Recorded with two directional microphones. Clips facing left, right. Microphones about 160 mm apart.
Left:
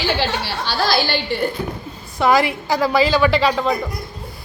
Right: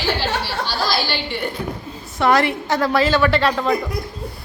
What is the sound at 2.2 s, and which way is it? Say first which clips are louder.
A woman's voice: left 1 dB; centre (ahead or behind).